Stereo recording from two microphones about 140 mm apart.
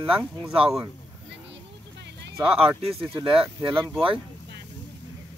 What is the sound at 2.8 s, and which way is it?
Speech, 40° right (ahead or behind).